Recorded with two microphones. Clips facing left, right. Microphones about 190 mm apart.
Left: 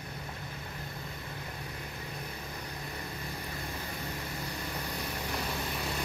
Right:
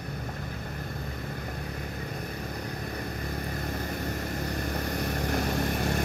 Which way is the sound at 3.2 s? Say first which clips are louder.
Right 6 dB; 45° right (ahead or behind).